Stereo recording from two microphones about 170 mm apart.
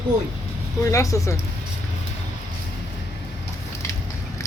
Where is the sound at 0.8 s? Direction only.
20° left (ahead or behind).